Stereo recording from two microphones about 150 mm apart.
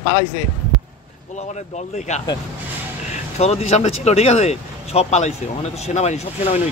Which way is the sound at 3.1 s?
45° left (ahead or behind).